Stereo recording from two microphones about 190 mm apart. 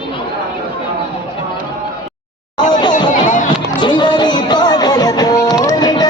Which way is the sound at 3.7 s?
25° left (ahead or behind).